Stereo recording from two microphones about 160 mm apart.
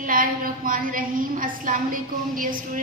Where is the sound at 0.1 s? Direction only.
60° right (ahead or behind).